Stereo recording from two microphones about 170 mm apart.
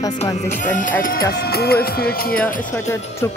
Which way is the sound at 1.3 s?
70° left (ahead or behind).